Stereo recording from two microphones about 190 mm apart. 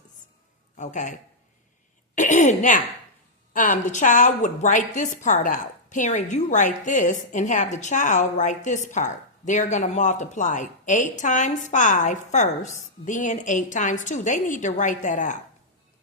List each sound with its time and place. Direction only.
0.8 s a woman's voice: 40° left (ahead or behind)
2.1 s throat clearing: 40° left (ahead or behind)
3.5 s a woman's voice: 40° left (ahead or behind)